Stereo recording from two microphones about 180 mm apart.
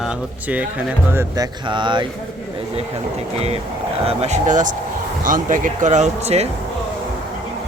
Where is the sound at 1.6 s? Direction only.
25° right (ahead or behind).